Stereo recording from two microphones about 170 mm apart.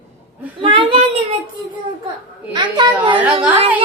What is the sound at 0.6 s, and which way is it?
Speech, 30° right (ahead or behind).